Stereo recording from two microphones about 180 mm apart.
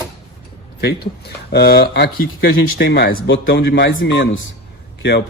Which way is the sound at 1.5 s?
60° left (ahead or behind).